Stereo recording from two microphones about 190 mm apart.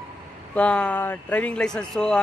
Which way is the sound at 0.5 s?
5° left (ahead or behind).